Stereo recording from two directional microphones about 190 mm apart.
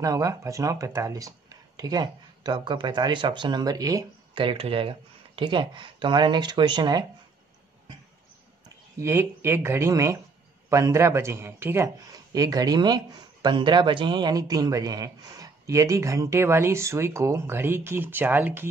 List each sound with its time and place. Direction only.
0.0 s speech: 15° right (ahead or behind)
8.9 s speech: 15° right (ahead or behind)